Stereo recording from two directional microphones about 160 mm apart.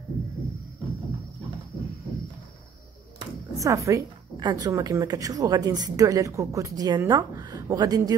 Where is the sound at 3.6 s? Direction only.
20° right (ahead or behind).